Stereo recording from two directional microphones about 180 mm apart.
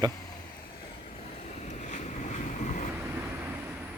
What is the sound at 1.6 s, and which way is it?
Boat, 40° left (ahead or behind).